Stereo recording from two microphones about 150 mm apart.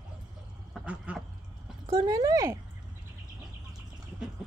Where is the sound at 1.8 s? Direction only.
30° right (ahead or behind).